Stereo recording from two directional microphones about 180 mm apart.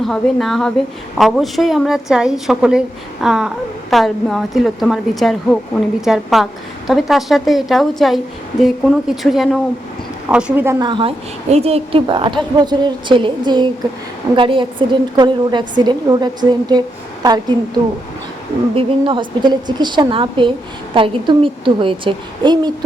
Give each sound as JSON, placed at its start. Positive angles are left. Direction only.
{"t": 0.0, "sound": "a woman's voice", "side_deg": 0}
{"t": 10.8, "sound": "a woman's voice", "side_deg": -25}
{"t": 18.7, "sound": "a woman's voice", "side_deg": -30}